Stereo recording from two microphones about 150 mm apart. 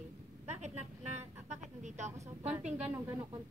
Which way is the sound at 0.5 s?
50° right (ahead or behind).